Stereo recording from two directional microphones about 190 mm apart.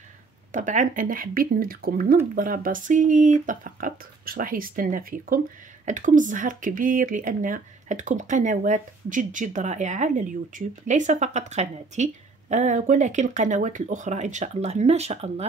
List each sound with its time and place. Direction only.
0.5 s a woman's voice: 40° right (ahead or behind)